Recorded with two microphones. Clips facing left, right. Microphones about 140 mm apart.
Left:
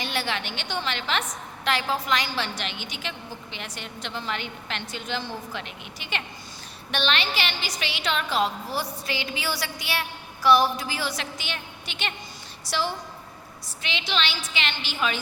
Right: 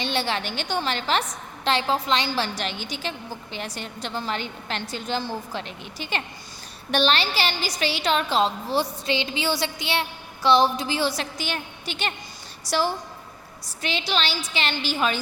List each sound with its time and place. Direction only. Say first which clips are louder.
0.0 s a woman's voice: right 3 dB; 30° right (ahead or behind)